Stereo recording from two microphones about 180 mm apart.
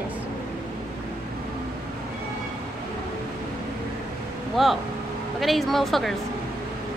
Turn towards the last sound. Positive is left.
turn(degrees=0)  # may be behind; listen again after turning